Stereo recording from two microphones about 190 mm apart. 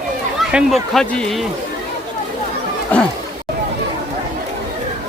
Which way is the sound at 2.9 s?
10° left (ahead or behind).